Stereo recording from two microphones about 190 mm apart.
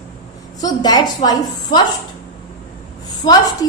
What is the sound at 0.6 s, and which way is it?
A woman's voice, 20° left (ahead or behind).